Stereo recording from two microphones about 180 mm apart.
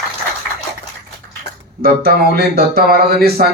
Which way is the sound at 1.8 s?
60° right (ahead or behind).